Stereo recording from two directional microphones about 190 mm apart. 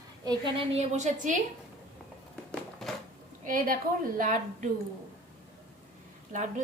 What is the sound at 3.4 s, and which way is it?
A woman's voice, 45° right (ahead or behind).